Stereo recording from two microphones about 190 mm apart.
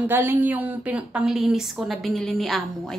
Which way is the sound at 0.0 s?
10° right (ahead or behind).